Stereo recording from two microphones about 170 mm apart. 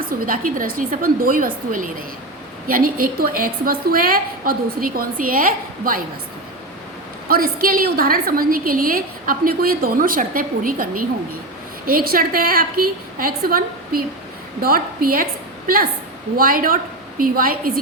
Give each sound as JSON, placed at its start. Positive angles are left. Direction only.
{"t": 0.0, "sound": "a woman's voice", "side_deg": -55}
{"t": 7.3, "sound": "a woman's voice", "side_deg": -60}